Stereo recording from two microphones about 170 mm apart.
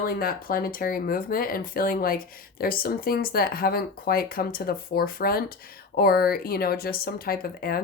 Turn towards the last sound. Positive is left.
turn(degrees=60)  # may be behind; listen again after turning